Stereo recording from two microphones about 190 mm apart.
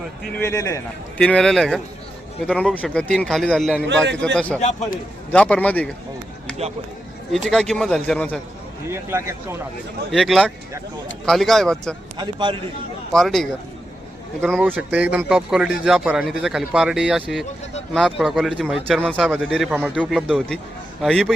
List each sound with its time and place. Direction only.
0.3 s a man's voice: 15° left (ahead or behind)
1.2 s a man's voice: 5° left (ahead or behind)
7.3 s speech: 5° left (ahead or behind)
8.9 s a man's voice: 15° right (ahead or behind)
10.1 s speech: centre (ahead or behind)
12.1 s a man's voice: 25° right (ahead or behind)
13.1 s speech: centre (ahead or behind)
14.6 s speech: 10° right (ahead or behind)